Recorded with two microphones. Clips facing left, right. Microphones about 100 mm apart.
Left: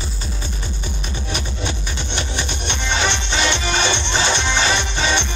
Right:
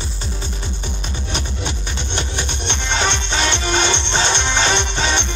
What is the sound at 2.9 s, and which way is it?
Music, 55° right (ahead or behind).